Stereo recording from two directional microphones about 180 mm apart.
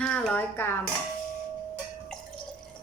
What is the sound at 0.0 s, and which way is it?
Dishes, 10° left (ahead or behind).